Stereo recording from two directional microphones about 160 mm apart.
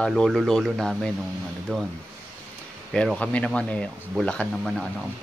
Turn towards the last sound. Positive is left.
turn(degrees=0)  # may be behind; listen again after turning